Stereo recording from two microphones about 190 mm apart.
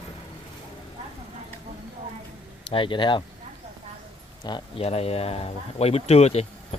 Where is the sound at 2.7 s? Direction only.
25° left (ahead or behind).